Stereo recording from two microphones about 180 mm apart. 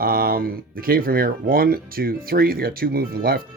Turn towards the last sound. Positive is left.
turn(degrees=-55)  # may be behind; listen again after turning